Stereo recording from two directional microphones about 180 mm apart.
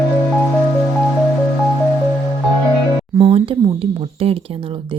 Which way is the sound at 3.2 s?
35° right (ahead or behind).